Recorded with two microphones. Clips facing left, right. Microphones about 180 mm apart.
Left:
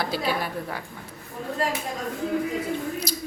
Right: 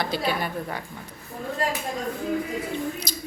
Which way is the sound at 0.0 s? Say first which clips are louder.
Even; 5° left (ahead or behind).